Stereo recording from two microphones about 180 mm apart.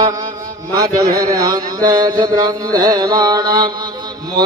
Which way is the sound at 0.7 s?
20° right (ahead or behind).